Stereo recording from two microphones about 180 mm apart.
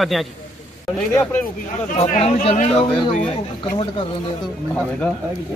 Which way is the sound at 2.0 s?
35° left (ahead or behind).